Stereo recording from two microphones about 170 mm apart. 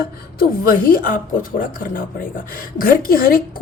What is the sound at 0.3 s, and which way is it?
Speech, 55° left (ahead or behind).